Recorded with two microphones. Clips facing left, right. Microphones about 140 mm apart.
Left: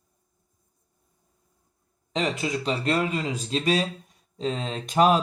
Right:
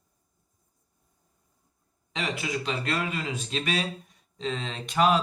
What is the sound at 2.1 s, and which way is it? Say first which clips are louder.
Speech: left 4 dB; 35° left (ahead or behind).